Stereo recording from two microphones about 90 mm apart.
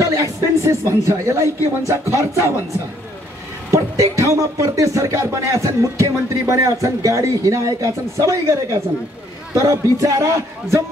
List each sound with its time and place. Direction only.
0.0 s speech: 35° right (ahead or behind)
3.7 s speech: 35° right (ahead or behind)